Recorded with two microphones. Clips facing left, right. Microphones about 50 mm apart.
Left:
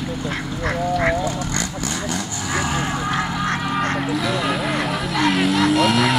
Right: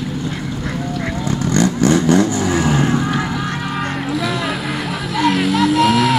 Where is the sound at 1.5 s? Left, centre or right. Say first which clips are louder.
Right 11 dB; right.